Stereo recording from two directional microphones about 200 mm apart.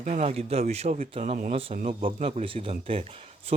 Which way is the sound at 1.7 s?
40° right (ahead or behind).